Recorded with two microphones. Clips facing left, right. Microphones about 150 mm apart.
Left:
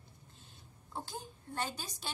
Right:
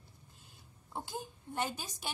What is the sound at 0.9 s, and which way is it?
A woman's voice, 15° right (ahead or behind).